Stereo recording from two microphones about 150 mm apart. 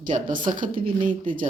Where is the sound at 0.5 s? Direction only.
30° right (ahead or behind).